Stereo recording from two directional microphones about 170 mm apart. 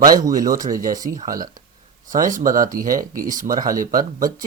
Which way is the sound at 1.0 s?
55° right (ahead or behind).